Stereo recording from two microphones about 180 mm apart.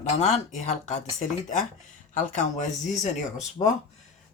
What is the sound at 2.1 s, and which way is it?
Speech, 45° left (ahead or behind).